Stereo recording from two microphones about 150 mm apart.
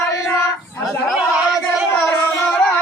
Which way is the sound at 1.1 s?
5° right (ahead or behind).